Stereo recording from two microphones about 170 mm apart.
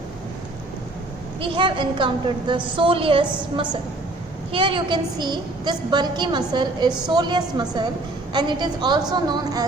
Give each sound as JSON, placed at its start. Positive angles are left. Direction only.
{"t": 1.4, "sound": "a woman's voice", "side_deg": -30}